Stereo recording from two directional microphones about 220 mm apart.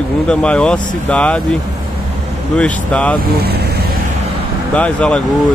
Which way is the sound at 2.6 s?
5° left (ahead or behind).